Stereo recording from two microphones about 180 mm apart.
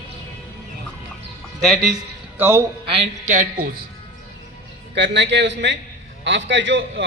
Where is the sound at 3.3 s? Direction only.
50° right (ahead or behind).